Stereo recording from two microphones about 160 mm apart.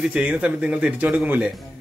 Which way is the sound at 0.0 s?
10° right (ahead or behind).